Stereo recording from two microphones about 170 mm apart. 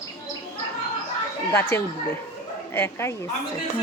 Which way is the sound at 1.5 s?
15° left (ahead or behind).